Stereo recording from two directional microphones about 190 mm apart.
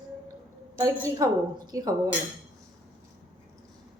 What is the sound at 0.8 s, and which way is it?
A woman's voice, 20° right (ahead or behind).